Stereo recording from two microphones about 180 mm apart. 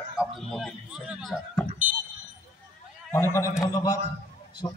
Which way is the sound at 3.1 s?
15° left (ahead or behind).